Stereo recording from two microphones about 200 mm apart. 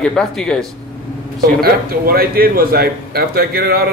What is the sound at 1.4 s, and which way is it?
Speech, 50° right (ahead or behind).